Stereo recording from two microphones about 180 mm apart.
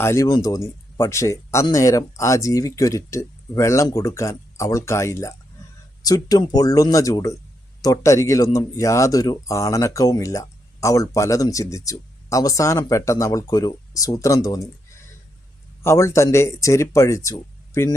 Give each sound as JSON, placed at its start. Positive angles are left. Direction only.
{"t": 0.0, "sound": "speech", "side_deg": 15}
{"t": 15.8, "sound": "speech", "side_deg": 15}